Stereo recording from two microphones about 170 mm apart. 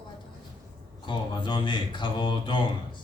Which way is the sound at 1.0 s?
25° left (ahead or behind).